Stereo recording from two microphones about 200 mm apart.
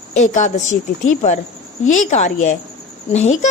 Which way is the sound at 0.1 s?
40° left (ahead or behind).